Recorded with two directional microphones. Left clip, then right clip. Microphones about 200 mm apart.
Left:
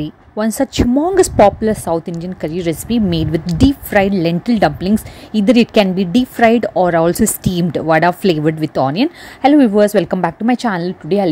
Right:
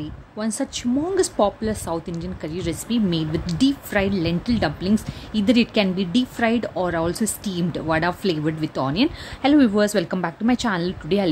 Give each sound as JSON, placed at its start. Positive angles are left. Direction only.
{"t": 0.0, "sound": "speech", "side_deg": 35}